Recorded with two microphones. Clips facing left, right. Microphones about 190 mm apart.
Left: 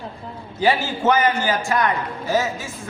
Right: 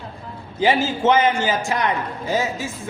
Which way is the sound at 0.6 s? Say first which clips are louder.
Right 1 dB; 20° right (ahead or behind).